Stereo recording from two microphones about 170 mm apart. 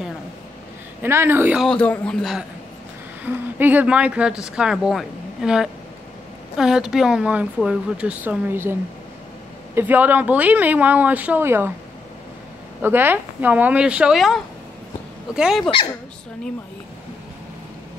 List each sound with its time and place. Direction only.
1.0 s speech: 15° right (ahead or behind)
1.6 s speech: 5° left (ahead or behind)
3.3 s speech: 10° right (ahead or behind)
9.8 s speech: 10° right (ahead or behind)
12.8 s speech: 10° right (ahead or behind)